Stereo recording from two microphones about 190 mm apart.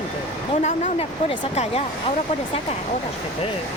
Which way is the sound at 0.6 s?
35° left (ahead or behind).